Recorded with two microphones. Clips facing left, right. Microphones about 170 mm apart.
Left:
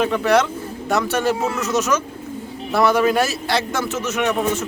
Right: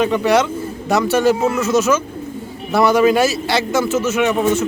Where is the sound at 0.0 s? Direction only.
Centre (ahead or behind).